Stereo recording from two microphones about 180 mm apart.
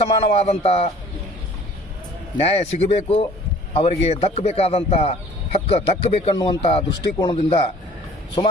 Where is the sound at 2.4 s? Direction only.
35° left (ahead or behind).